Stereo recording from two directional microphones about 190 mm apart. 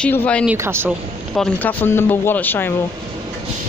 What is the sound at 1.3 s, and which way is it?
Speech, 5° left (ahead or behind).